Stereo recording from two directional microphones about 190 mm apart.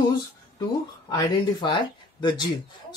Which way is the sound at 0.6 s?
20° left (ahead or behind).